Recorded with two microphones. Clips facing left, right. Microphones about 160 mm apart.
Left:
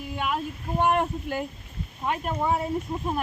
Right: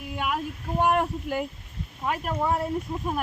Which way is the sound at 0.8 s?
5° right (ahead or behind).